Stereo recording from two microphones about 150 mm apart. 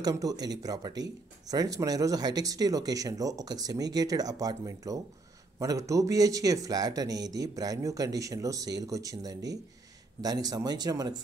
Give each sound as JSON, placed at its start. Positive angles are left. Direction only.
{"t": 0.0, "sound": "speech", "side_deg": -25}